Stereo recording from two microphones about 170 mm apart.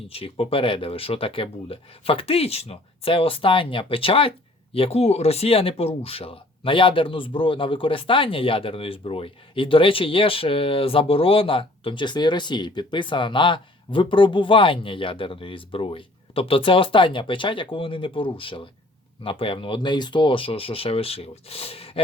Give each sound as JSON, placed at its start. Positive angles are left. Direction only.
{"t": 0.1, "sound": "speech", "side_deg": 35}